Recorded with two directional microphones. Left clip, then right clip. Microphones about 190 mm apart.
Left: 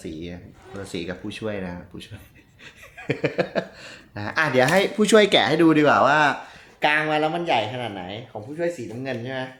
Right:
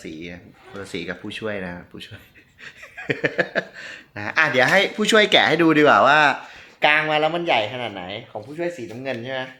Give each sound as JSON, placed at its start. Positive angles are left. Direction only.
{"t": 0.0, "sound": "speech", "side_deg": -5}
{"t": 0.7, "sound": "speech", "side_deg": -15}
{"t": 5.3, "sound": "speech", "side_deg": -15}